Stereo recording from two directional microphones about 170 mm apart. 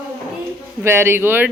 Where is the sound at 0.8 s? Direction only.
15° right (ahead or behind).